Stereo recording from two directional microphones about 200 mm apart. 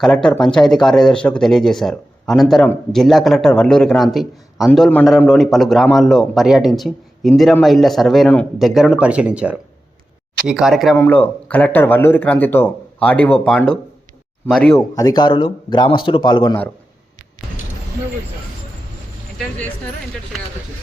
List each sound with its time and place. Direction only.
0.0 s speech: 5° left (ahead or behind)
14.9 s speech: 20° left (ahead or behind)